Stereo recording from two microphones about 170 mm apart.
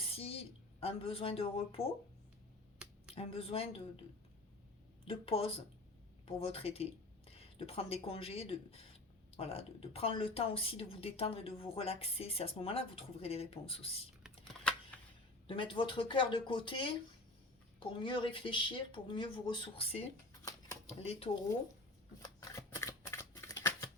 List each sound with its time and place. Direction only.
0.1 s a woman's voice: 35° left (ahead or behind)
3.2 s speech: 35° left (ahead or behind)
5.0 s speech: 35° left (ahead or behind)
14.3 s computer keyboard: 5° left (ahead or behind)
15.4 s speech: 30° left (ahead or behind)
22.2 s shuffling cards: 20° left (ahead or behind)